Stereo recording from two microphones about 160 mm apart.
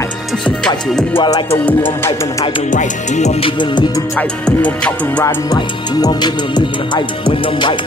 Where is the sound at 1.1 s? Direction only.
30° left (ahead or behind).